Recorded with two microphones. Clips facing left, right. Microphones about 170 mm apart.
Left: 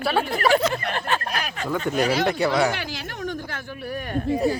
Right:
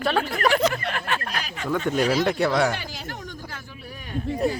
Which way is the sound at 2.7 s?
80° left.